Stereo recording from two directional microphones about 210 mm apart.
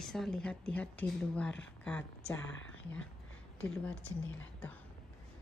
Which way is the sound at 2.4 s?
65° left (ahead or behind).